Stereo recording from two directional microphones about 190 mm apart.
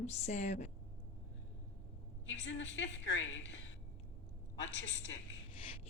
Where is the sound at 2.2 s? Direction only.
75° left (ahead or behind).